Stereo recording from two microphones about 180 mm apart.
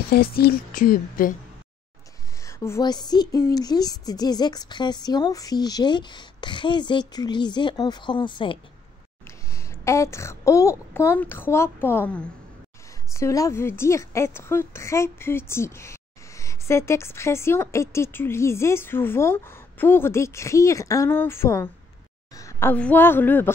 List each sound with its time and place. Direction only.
0.1 s speech: 60° left (ahead or behind)
2.4 s a woman's voice: 15° left (ahead or behind)
9.5 s a woman's voice: 15° left (ahead or behind)